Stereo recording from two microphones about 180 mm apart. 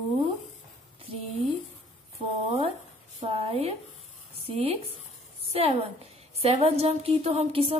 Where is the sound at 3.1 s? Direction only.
35° right (ahead or behind).